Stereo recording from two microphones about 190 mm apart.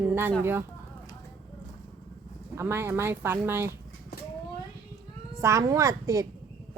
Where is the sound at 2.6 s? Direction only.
10° right (ahead or behind).